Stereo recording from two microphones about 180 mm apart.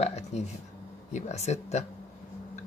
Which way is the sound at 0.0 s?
35° left (ahead or behind).